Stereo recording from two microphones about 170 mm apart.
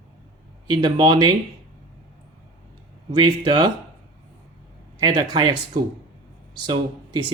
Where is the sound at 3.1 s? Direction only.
25° right (ahead or behind).